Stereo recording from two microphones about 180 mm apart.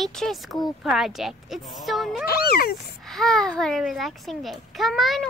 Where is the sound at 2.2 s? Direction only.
60° left (ahead or behind).